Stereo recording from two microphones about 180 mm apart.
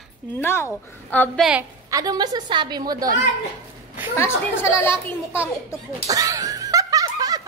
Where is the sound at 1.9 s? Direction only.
20° right (ahead or behind).